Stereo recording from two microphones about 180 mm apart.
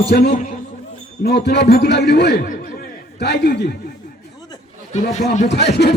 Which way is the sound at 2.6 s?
60° left (ahead or behind).